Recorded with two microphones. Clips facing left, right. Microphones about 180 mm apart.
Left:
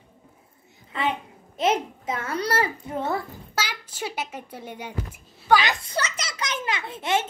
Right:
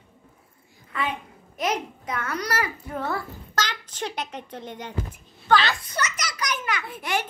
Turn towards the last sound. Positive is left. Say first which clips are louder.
# left 3 dB
turn(degrees=25)  # may be behind; listen again after turning